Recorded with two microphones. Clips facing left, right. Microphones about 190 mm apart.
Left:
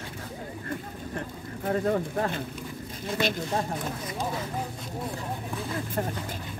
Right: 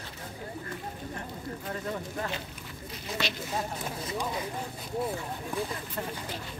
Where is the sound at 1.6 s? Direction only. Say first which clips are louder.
Left 11 dB; 55° left (ahead or behind).